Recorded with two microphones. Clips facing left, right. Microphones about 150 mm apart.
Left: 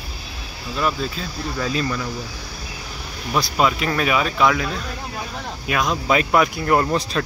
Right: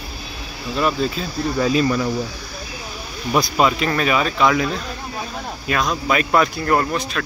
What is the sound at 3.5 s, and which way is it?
Speech, centre (ahead or behind).